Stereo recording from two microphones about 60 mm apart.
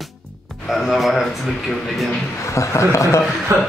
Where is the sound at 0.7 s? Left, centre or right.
Centre.